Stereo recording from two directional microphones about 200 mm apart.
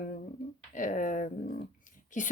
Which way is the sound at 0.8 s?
40° left (ahead or behind).